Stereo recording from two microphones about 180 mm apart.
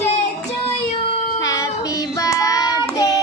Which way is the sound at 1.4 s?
20° left (ahead or behind).